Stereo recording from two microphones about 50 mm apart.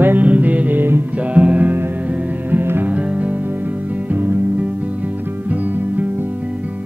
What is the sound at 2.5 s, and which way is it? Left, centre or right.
Music, right.